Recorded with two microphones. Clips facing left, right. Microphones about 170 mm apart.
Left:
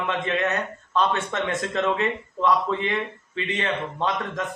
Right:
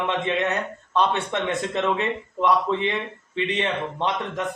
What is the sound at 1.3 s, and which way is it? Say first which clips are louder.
A man's voice: right 1 dB; 20° right (ahead or behind).